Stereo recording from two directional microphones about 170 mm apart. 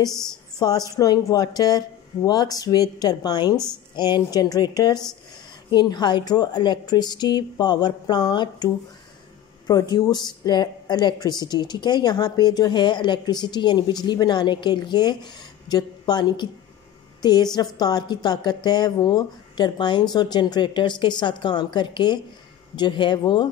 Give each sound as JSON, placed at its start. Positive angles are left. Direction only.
{"t": 0.6, "sound": "a woman's voice", "side_deg": 20}